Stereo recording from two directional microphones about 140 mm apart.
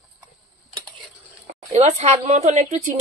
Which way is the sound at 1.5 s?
55° right (ahead or behind).